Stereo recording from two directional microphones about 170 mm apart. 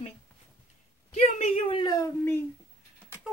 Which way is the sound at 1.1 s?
35° left (ahead or behind).